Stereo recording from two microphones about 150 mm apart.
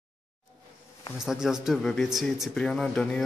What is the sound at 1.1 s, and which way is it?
Speech, 5° right (ahead or behind).